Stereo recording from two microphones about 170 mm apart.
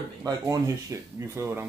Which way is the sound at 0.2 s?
20° right (ahead or behind).